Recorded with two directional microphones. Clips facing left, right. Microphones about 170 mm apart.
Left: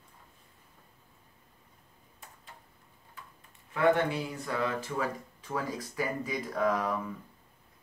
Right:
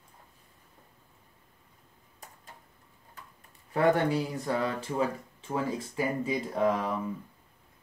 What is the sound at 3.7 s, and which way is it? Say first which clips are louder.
Speech: right 1 dB; 35° right (ahead or behind).